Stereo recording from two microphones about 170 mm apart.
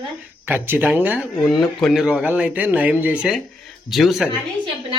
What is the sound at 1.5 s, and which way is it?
A woman's voice, centre (ahead or behind).